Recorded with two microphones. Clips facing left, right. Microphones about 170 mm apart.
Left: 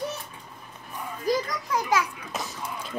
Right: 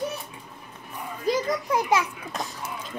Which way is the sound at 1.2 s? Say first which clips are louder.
Right 2 dB; 25° right (ahead or behind).